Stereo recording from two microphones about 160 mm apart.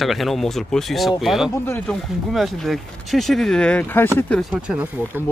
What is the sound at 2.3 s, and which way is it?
Speech, centre (ahead or behind).